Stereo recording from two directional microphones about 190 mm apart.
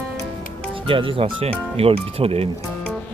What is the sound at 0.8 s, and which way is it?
Speech, 25° right (ahead or behind).